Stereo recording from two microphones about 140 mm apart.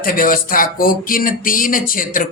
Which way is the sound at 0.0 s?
90° left.